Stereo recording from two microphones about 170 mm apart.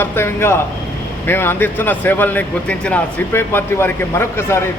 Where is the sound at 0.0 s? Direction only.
15° left (ahead or behind).